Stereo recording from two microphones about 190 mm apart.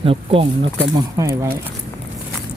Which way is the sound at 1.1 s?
15° right (ahead or behind).